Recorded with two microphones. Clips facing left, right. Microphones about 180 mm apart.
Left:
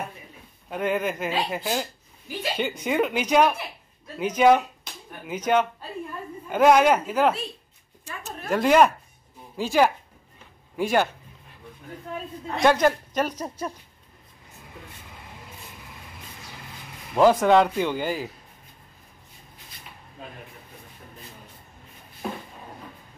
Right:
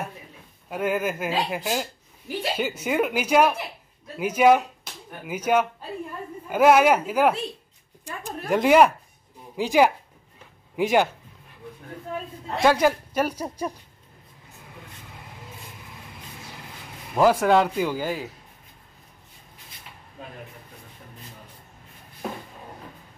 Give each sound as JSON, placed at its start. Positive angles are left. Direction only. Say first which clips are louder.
{"t": 0.7, "sound": "speech", "louder": "even", "side_deg": -5}
{"t": 8.0, "sound": "a sound", "louder": "right 3 dB", "side_deg": -15}
{"t": 9.6, "sound": "speech", "louder": "right 2 dB", "side_deg": -15}
{"t": 12.5, "sound": "speech", "louder": "even", "side_deg": -10}
{"t": 17.1, "sound": "speech", "louder": "left 1 dB", "side_deg": -5}